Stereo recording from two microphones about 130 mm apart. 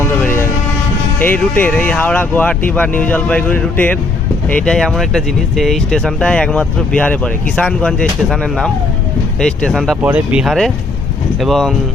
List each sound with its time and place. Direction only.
0.0 s vehicle: 15° left (ahead or behind)
1.2 s speech: 15° left (ahead or behind)
10.0 s speech: 10° right (ahead or behind)